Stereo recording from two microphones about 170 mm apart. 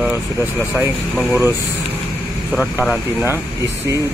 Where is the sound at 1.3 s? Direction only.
15° right (ahead or behind).